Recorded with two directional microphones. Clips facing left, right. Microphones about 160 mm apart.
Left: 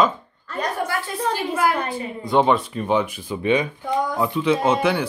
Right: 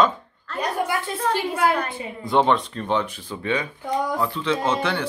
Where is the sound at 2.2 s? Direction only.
5° left (ahead or behind).